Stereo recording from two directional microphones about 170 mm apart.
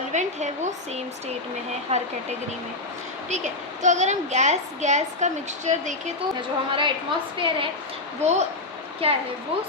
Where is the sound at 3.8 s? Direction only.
45° right (ahead or behind).